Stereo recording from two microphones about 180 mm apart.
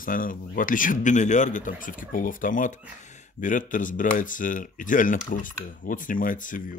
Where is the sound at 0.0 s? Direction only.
50° left (ahead or behind).